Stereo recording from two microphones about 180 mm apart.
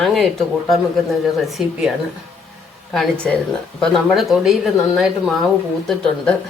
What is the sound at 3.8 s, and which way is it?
Speech, centre (ahead or behind).